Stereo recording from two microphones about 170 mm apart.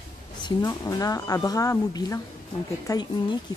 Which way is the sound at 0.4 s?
25° left (ahead or behind).